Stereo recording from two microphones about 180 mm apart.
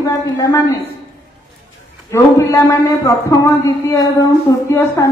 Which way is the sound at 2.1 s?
15° left (ahead or behind).